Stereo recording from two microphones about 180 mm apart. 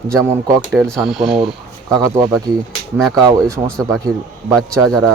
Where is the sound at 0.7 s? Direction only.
Centre (ahead or behind).